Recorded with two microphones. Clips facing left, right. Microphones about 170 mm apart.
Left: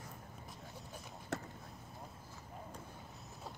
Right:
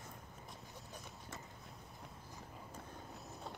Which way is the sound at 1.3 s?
70° left (ahead or behind).